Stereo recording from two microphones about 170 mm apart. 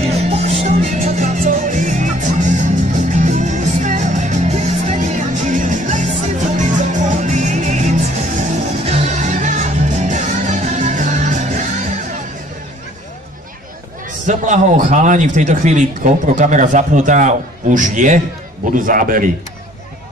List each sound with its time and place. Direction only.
0.2 s music: 40° right (ahead or behind)
14.2 s a man's voice: 45° right (ahead or behind)